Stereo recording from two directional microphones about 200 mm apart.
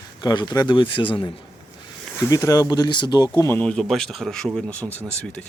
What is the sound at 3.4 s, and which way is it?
Speech, 10° left (ahead or behind).